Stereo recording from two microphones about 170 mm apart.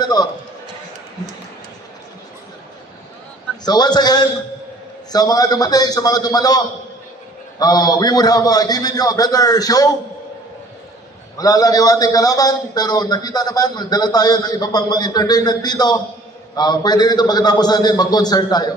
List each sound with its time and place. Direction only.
0.0 s a man's voice: 25° left (ahead or behind)
3.6 s a man's voice: 25° left (ahead or behind)
11.3 s a man's voice: 20° left (ahead or behind)